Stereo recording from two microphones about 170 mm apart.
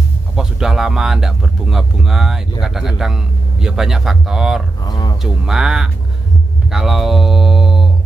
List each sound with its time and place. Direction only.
0.4 s speech: 5° right (ahead or behind)
4.8 s a sound: 25° left (ahead or behind)
5.2 s speech: centre (ahead or behind)
6.7 s mantra: 5° right (ahead or behind)